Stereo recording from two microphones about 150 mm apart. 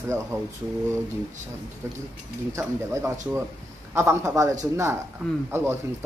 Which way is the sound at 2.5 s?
20° right (ahead or behind).